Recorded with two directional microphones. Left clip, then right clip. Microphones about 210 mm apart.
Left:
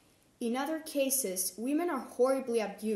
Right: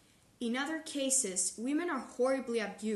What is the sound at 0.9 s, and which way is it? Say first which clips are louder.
A woman's voice: left 3 dB; 25° right (ahead or behind).